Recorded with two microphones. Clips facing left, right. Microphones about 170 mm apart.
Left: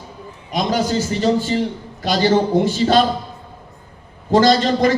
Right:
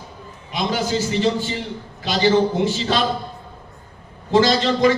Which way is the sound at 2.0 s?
45° left (ahead or behind).